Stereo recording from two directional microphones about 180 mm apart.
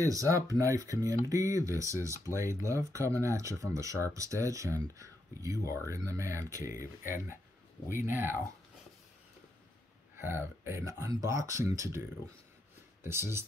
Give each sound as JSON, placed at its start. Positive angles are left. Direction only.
{"t": 0.1, "sound": "speech", "side_deg": -20}
{"t": 10.1, "sound": "speech", "side_deg": -15}
{"t": 13.0, "sound": "speech", "side_deg": -15}